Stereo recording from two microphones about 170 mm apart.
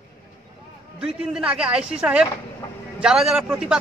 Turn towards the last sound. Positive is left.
turn(degrees=-5)  # may be behind; listen again after turning